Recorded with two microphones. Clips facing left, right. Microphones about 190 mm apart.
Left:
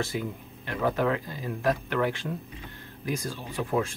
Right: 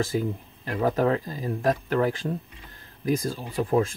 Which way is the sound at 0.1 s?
40° right (ahead or behind).